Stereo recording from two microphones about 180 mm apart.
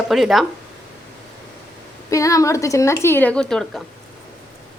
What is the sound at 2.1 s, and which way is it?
A woman's voice, 20° left (ahead or behind).